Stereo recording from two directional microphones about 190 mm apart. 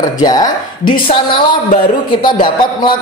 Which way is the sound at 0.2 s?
20° left (ahead or behind).